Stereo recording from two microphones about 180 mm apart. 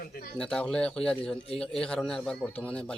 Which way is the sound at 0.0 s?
55° left (ahead or behind).